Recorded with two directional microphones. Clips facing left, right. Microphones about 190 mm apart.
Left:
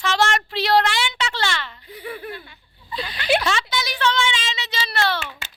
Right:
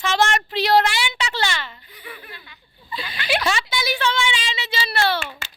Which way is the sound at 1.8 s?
30° left (ahead or behind).